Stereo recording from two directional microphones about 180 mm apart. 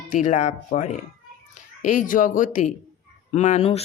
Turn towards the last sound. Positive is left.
turn(degrees=40)  # may be behind; listen again after turning